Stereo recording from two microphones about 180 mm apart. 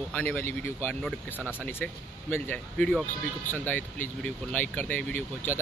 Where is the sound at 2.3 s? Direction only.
10° left (ahead or behind).